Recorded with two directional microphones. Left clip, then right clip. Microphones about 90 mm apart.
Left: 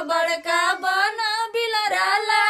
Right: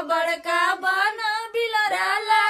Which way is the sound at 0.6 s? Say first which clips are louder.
Even; 5° right (ahead or behind).